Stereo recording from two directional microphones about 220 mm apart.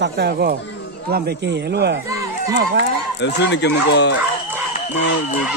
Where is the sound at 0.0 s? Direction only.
45° right (ahead or behind).